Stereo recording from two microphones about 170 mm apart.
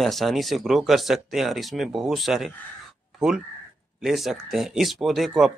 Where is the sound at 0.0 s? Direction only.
Centre (ahead or behind).